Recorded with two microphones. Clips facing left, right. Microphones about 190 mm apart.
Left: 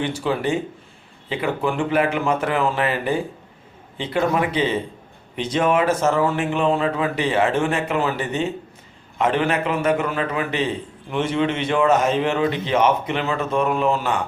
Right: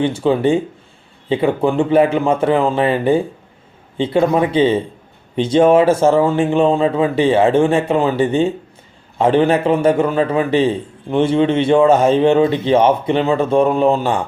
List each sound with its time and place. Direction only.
0.0 s a man's voice: 25° right (ahead or behind)